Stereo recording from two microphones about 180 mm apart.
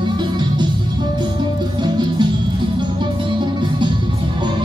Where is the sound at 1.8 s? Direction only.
25° right (ahead or behind).